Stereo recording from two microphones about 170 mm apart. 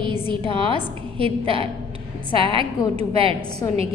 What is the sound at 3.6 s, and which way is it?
Speech, 20° left (ahead or behind).